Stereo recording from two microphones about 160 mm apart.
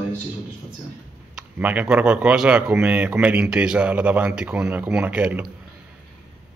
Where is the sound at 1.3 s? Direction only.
10° right (ahead or behind).